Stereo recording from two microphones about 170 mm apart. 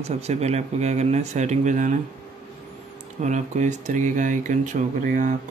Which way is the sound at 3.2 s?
45° right (ahead or behind).